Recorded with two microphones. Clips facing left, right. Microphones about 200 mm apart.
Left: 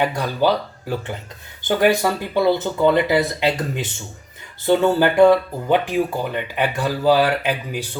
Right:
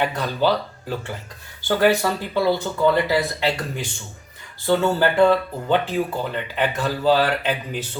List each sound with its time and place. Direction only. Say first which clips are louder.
0.0 s speech: left 2 dB; 10° left (ahead or behind)